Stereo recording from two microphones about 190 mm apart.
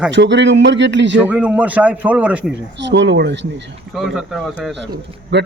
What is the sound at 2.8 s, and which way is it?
Speech, 70° right (ahead or behind).